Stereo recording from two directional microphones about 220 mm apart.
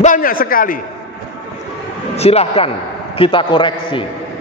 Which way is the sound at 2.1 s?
30° left (ahead or behind).